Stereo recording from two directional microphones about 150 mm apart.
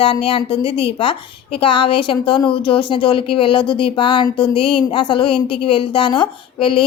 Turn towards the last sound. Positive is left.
turn(degrees=35)  # may be behind; listen again after turning